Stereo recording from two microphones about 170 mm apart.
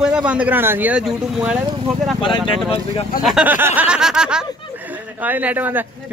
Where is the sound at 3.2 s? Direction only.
5° right (ahead or behind).